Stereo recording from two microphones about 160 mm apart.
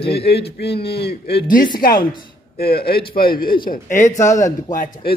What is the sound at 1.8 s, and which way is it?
Speech, 65° left (ahead or behind).